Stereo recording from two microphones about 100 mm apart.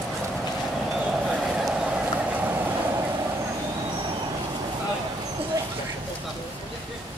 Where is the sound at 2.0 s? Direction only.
15° right (ahead or behind).